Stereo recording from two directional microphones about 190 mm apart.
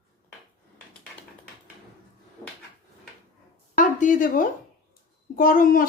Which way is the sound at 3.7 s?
45° left (ahead or behind).